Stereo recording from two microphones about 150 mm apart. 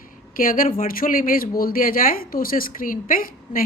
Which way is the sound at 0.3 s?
65° left (ahead or behind).